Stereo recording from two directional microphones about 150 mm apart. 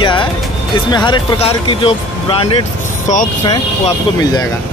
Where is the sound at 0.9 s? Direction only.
30° left (ahead or behind).